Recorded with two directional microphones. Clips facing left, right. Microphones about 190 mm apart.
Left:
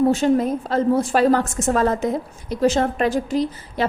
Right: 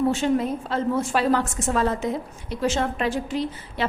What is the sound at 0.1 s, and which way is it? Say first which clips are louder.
A woman's voice: left 5 dB; 40° left (ahead or behind).